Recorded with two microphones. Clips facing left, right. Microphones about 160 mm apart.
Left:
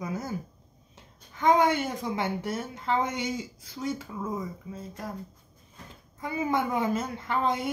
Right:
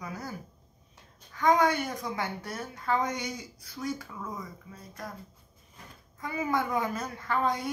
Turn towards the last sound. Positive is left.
turn(degrees=20)  # may be behind; listen again after turning